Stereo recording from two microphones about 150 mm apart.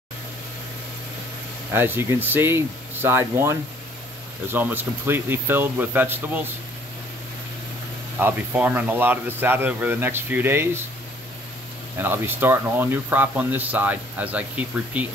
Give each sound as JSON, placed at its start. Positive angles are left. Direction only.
{"t": 1.7, "sound": "speech", "side_deg": -15}
{"t": 8.2, "sound": "speech", "side_deg": -10}
{"t": 12.0, "sound": "speech", "side_deg": -15}